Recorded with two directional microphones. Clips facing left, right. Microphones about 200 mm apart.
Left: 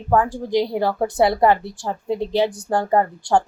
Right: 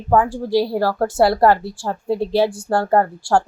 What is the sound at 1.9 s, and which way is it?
Speech, 10° right (ahead or behind).